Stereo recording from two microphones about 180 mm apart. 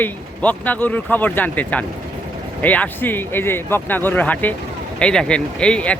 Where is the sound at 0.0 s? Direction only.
10° left (ahead or behind).